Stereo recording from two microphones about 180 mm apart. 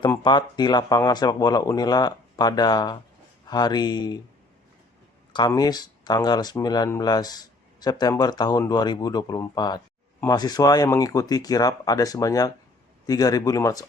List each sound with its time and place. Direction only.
0.1 s speech: 25° left (ahead or behind)
5.3 s speech: 20° left (ahead or behind)